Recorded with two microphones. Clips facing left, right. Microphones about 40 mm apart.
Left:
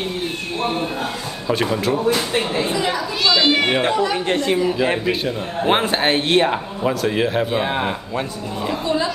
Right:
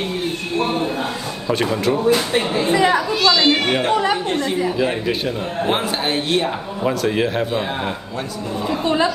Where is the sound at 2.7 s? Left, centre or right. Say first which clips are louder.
Right 5 dB; right.